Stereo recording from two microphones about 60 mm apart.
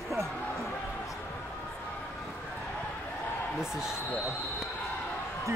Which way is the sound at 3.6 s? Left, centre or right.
Centre.